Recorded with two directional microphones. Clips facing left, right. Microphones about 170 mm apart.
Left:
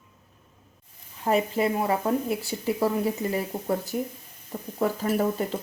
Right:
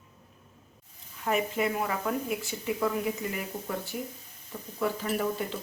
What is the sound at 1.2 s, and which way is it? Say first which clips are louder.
Speech: left 4 dB; 30° left (ahead or behind).